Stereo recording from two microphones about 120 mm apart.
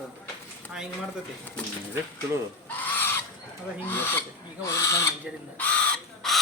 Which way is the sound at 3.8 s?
15° left (ahead or behind).